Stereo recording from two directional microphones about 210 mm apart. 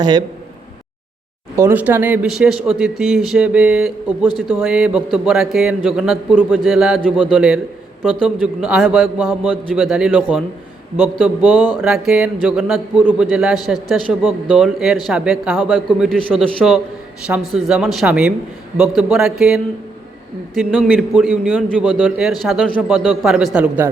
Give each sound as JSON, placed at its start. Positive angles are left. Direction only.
{"t": 0.0, "sound": "a man's voice", "side_deg": -20}
{"t": 1.5, "sound": "a man's voice", "side_deg": -10}
{"t": 8.6, "sound": "a man's voice", "side_deg": -5}
{"t": 20.6, "sound": "a man's voice", "side_deg": 0}